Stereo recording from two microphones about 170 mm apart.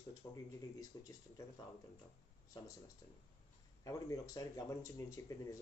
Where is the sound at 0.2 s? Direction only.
20° left (ahead or behind).